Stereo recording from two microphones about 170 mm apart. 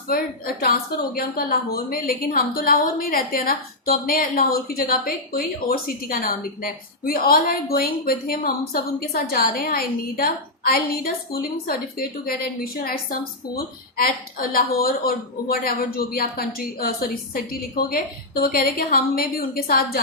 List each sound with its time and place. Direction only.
0.1 s a woman's voice: 60° left (ahead or behind)